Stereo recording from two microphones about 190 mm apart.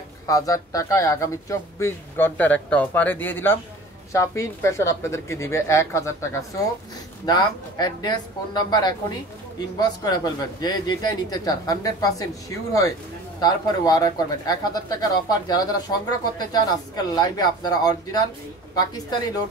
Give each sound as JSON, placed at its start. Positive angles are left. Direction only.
{"t": 0.3, "sound": "speech", "side_deg": 20}